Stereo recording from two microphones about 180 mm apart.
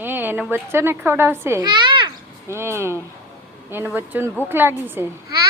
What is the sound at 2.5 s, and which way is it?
Speech, 15° right (ahead or behind).